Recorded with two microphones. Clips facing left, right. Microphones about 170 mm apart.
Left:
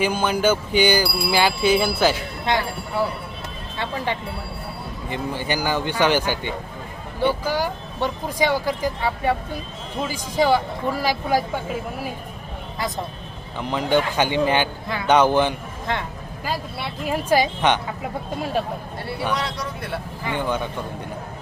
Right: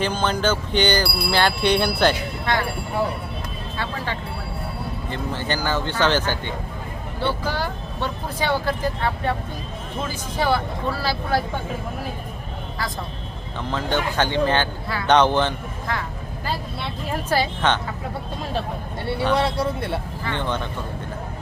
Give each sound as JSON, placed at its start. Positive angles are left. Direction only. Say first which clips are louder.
{"t": 0.0, "sound": "speech", "louder": "left 2 dB", "side_deg": 10}
{"t": 2.5, "sound": "speech", "louder": "left 1 dB", "side_deg": 20}
{"t": 3.8, "sound": "speech", "louder": "left 3 dB", "side_deg": 20}
{"t": 13.6, "sound": "speech", "louder": "left 4 dB", "side_deg": 15}
{"t": 16.8, "sound": "speech", "louder": "left 2 dB", "side_deg": 10}
{"t": 19.3, "sound": "speech", "louder": "right 6 dB", "side_deg": -25}
{"t": 20.2, "sound": "speech", "louder": "left 4 dB", "side_deg": 10}